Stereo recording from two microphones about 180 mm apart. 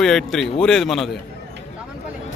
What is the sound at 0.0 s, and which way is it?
A man's voice, 5° left (ahead or behind).